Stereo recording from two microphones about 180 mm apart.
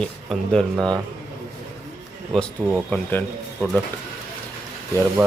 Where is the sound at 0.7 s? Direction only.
20° right (ahead or behind).